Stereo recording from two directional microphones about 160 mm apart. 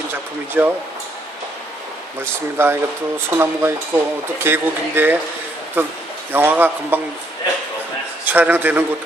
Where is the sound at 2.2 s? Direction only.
15° right (ahead or behind).